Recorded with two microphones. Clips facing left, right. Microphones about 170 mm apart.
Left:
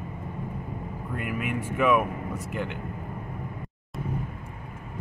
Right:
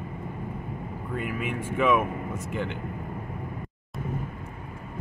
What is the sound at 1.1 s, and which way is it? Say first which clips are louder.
Vehicle: even; 5° left (ahead or behind).